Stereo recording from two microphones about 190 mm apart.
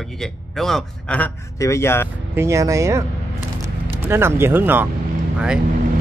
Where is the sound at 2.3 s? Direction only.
15° right (ahead or behind).